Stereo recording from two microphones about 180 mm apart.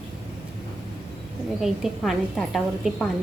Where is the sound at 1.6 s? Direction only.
Centre (ahead or behind).